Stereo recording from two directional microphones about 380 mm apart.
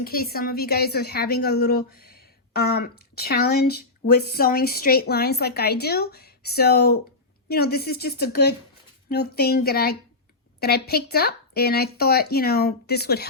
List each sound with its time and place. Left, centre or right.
0.0 s a woman's voice: left